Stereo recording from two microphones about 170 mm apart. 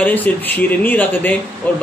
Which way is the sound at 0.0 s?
10° left (ahead or behind).